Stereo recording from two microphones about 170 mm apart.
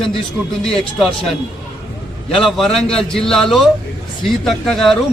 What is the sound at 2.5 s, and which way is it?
Speech, 5° left (ahead or behind).